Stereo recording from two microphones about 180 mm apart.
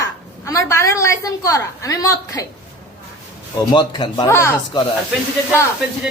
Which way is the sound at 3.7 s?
25° left (ahead or behind).